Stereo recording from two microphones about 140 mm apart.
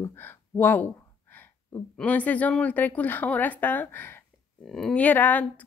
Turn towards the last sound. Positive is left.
turn(degrees=10)  # may be behind; listen again after turning